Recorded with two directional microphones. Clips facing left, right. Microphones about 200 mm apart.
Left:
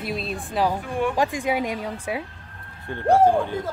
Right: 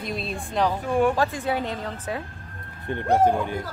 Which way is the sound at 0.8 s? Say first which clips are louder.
Right 4 dB; 45° right (ahead or behind).